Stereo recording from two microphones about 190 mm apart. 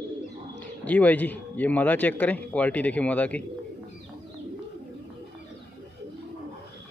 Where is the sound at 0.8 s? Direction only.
10° left (ahead or behind).